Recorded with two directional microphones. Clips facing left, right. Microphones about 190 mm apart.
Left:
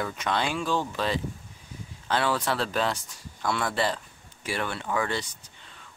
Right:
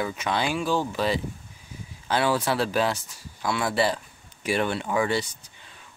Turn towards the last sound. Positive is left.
turn(degrees=-10)  # may be behind; listen again after turning